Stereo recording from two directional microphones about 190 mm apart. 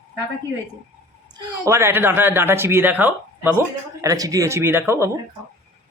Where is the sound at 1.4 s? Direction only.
15° right (ahead or behind).